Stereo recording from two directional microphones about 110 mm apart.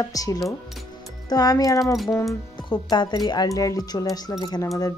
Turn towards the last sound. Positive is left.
turn(degrees=35)  # may be behind; listen again after turning